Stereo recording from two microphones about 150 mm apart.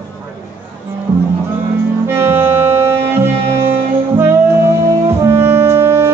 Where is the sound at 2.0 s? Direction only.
15° right (ahead or behind).